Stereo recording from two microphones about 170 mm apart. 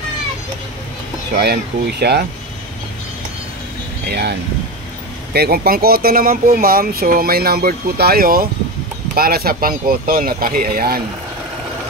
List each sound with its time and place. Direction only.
1.3 s speech: 70° right (ahead or behind)
4.1 s speech: 75° right (ahead or behind)